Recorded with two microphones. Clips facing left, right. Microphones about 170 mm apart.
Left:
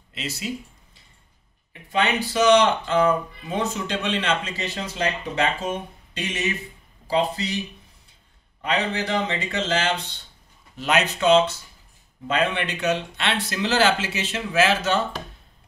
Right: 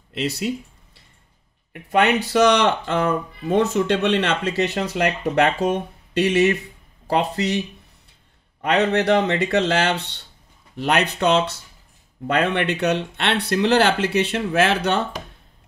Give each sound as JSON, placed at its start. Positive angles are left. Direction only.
{"t": 0.1, "sound": "speech", "side_deg": -60}
{"t": 1.7, "sound": "speech", "side_deg": -60}
{"t": 8.6, "sound": "speech", "side_deg": -65}